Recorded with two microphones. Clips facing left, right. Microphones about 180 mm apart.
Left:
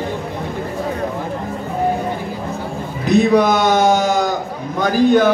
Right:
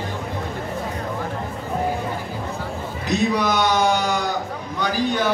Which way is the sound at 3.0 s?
55° left (ahead or behind).